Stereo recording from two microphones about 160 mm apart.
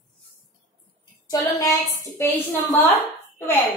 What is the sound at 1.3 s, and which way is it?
A woman's voice, 25° left (ahead or behind).